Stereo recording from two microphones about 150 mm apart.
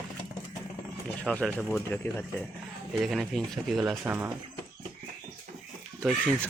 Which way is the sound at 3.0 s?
Centre (ahead or behind).